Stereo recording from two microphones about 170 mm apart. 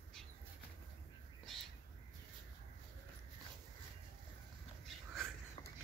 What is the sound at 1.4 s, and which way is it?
Bird, centre (ahead or behind).